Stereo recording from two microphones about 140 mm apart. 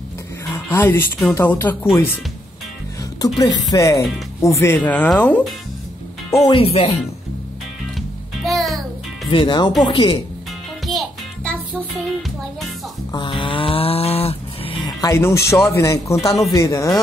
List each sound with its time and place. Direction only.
0.7 s speech: 15° left (ahead or behind)
3.7 s speech: 25° left (ahead or behind)
6.5 s speech: 45° left (ahead or behind)
8.5 s music: centre (ahead or behind)
9.3 s speech: 35° left (ahead or behind)
10.9 s music: centre (ahead or behind)
13.1 s snoring: 35° left (ahead or behind)
14.9 s speech: 25° left (ahead or behind)